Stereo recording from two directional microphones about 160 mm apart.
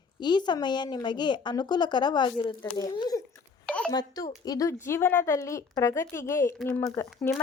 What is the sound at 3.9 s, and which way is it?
Speech, 25° left (ahead or behind).